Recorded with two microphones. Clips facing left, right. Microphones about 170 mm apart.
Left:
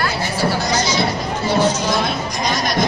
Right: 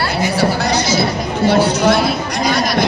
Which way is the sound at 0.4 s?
65° right (ahead or behind).